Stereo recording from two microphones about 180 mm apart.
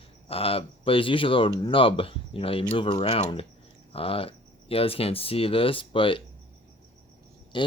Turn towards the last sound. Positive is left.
turn(degrees=25)  # may be behind; listen again after turning